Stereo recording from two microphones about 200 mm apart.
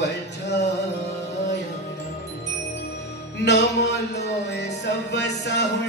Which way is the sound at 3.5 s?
55° left (ahead or behind).